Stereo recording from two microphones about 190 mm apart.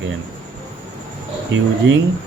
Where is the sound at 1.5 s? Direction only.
90° right.